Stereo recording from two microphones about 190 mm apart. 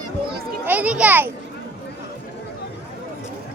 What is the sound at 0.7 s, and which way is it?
Speech, 5° right (ahead or behind).